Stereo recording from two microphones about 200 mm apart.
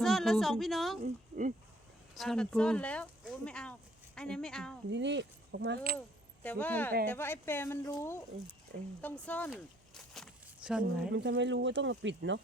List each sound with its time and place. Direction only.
0.0 s speech: centre (ahead or behind)
1.0 s speech: 40° right (ahead or behind)
2.1 s speech: centre (ahead or behind)
4.9 s speech: 65° right (ahead or behind)
6.4 s speech: 10° left (ahead or behind)
9.2 s speech: 5° left (ahead or behind)
9.5 s a sound: centre (ahead or behind)
11.1 s speech: 60° right (ahead or behind)